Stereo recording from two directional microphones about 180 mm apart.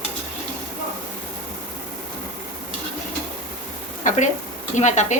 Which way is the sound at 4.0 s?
45° left (ahead or behind).